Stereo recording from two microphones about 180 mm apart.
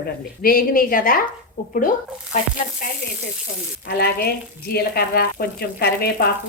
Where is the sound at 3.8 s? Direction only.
60° left (ahead or behind).